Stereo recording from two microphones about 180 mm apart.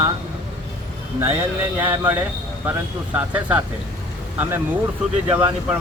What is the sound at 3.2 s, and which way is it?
Speech, 10° right (ahead or behind).